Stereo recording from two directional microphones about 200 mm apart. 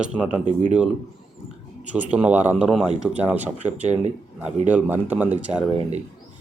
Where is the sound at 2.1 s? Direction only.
5° right (ahead or behind).